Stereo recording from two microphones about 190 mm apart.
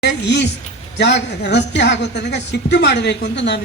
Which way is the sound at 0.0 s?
65° left (ahead or behind).